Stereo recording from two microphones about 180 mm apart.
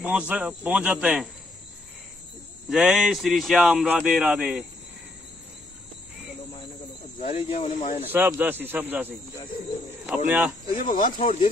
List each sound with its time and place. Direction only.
0.3 s speech: 10° right (ahead or behind)
2.7 s a man's voice: centre (ahead or behind)
7.2 s speech: 40° left (ahead or behind)
8.0 s speech: 10° right (ahead or behind)
10.8 s speech: 45° left (ahead or behind)